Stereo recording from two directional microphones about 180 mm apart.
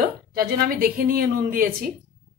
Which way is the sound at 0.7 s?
55° right (ahead or behind).